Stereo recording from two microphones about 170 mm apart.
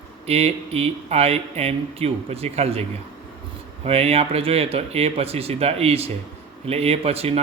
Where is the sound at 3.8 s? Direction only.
35° right (ahead or behind).